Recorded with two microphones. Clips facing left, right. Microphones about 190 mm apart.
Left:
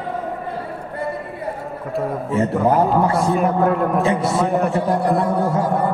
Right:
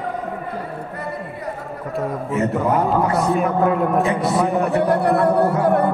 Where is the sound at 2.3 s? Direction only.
30° left (ahead or behind).